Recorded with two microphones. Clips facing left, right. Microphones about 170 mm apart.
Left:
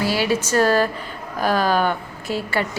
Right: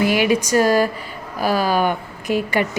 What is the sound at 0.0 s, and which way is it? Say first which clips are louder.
A woman's voice: right 4 dB; 15° right (ahead or behind).